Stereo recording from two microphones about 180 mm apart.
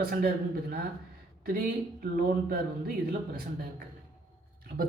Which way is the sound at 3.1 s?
55° right (ahead or behind).